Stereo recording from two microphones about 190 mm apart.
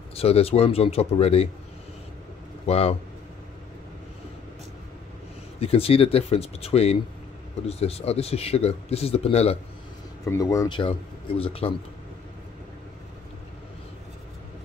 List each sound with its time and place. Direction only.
0.1 s speech: 30° left (ahead or behind)
2.6 s speech: 30° left (ahead or behind)
5.6 s speech: 30° left (ahead or behind)
10.2 s speech: 15° left (ahead or behind)